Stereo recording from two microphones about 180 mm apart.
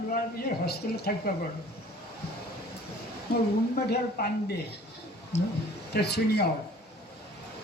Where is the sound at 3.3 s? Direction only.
60° left (ahead or behind).